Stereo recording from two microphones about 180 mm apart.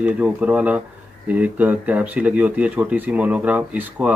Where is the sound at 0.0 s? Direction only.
5° right (ahead or behind).